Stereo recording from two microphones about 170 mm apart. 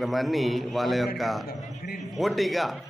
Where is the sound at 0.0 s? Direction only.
Centre (ahead or behind).